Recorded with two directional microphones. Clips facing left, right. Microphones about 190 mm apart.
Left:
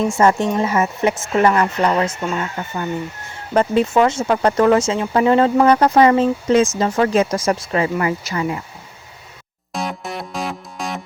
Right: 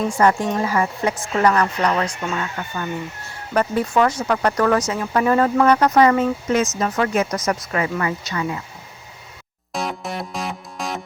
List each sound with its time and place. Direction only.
0.1 s speech: 25° left (ahead or behind)
9.7 s music: centre (ahead or behind)